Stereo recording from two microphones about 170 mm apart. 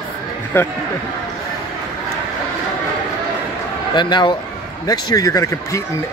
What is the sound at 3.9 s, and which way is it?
A man's voice, 25° left (ahead or behind).